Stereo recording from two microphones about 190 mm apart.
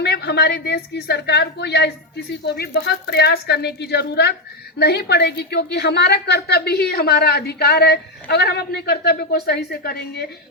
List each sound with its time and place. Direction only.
0.0 s a woman's voice: 60° left (ahead or behind)